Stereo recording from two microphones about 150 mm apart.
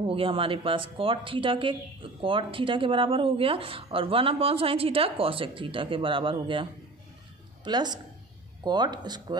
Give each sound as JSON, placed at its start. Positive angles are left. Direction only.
{"t": 0.0, "sound": "speech", "side_deg": -35}